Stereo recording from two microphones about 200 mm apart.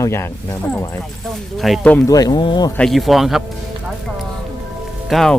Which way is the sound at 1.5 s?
Centre (ahead or behind).